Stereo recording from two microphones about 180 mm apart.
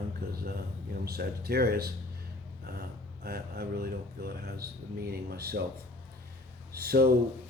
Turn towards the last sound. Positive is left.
turn(degrees=-60)  # may be behind; listen again after turning